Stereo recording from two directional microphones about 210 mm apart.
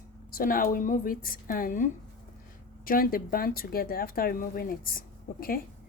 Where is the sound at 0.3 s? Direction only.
45° left (ahead or behind).